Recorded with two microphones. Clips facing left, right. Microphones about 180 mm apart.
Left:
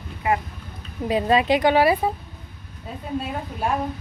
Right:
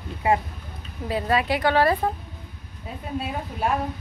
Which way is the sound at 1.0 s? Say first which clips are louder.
Left 4 dB; 20° left (ahead or behind).